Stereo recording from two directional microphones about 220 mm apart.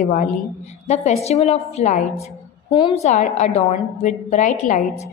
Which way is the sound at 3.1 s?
35° left (ahead or behind).